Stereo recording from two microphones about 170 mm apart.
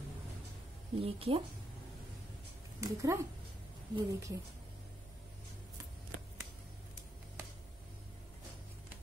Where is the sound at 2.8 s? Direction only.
15° right (ahead or behind).